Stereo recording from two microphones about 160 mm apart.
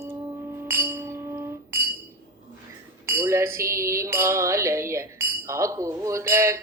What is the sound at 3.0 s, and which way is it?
Music, 15° right (ahead or behind).